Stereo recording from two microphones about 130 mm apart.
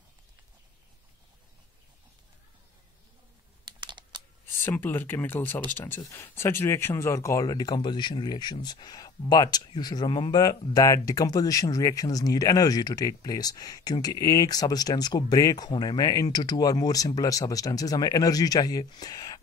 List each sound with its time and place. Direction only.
3.6 s computer keyboard: 35° right (ahead or behind)
4.6 s speech: 15° left (ahead or behind)